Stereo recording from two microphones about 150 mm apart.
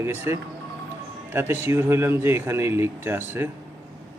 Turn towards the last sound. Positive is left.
turn(degrees=-15)  # may be behind; listen again after turning